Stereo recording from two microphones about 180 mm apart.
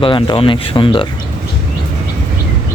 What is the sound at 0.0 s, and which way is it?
Speech, 30° left (ahead or behind).